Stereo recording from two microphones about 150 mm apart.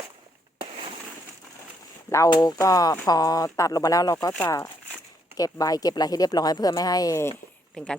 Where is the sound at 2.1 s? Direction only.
25° left (ahead or behind).